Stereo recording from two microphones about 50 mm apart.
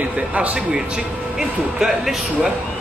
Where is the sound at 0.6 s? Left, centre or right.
Centre.